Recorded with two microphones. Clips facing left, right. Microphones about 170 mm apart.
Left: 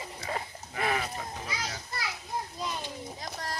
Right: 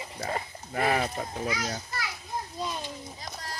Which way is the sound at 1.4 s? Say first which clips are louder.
Right 6 dB; 45° right (ahead or behind).